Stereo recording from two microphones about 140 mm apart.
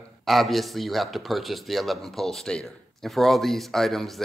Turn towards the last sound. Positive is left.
turn(degrees=0)  # may be behind; listen again after turning